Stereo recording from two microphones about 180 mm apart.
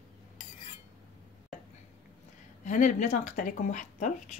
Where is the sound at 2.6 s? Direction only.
45° left (ahead or behind).